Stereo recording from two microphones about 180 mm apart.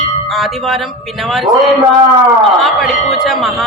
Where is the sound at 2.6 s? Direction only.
Centre (ahead or behind).